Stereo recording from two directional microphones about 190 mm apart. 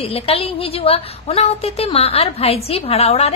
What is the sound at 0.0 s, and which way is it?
A woman's voice, 30° left (ahead or behind).